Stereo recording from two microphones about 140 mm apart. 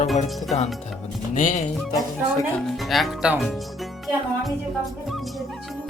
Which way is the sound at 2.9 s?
Centre (ahead or behind).